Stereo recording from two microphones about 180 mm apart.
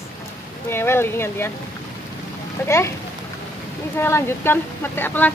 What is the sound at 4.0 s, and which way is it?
Speech, 15° left (ahead or behind).